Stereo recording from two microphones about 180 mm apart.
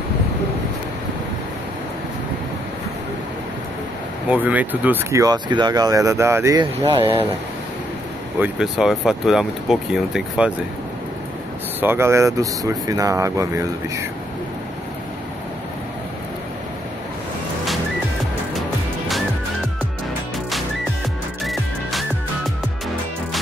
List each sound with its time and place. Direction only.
4.3 s speech: 10° right (ahead or behind)
8.4 s speech: 5° right (ahead or behind)
11.8 s speech: 15° right (ahead or behind)